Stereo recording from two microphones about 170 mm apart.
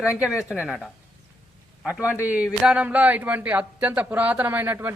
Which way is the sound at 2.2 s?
10° right (ahead or behind).